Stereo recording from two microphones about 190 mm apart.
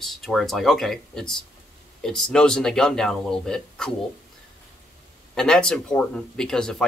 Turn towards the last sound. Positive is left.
turn(degrees=5)  # may be behind; listen again after turning